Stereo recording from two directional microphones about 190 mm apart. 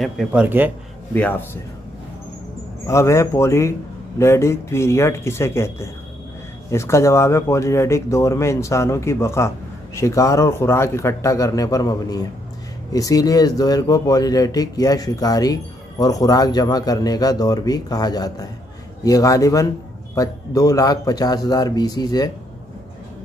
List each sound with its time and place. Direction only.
0.0 s speech: 5° right (ahead or behind)
1.1 s speech: 10° left (ahead or behind)
2.9 s speech: 15° left (ahead or behind)